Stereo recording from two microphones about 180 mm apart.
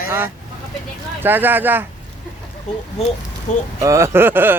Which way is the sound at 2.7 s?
45° left (ahead or behind).